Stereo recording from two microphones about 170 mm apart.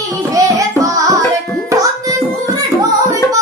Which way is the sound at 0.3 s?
20° right (ahead or behind).